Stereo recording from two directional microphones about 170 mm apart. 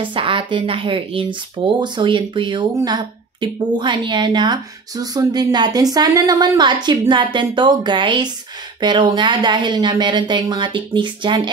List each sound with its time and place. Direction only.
0.0 s speech: 30° right (ahead or behind)